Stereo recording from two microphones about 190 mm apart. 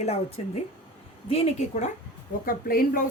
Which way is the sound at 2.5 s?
50° left (ahead or behind).